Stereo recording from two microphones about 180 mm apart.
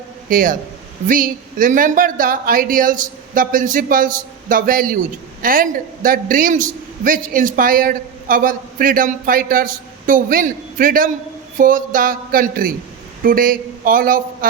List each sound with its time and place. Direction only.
0.3 s a man's voice: 50° right (ahead or behind)